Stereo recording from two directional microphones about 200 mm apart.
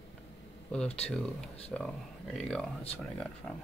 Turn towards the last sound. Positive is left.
turn(degrees=5)  # may be behind; listen again after turning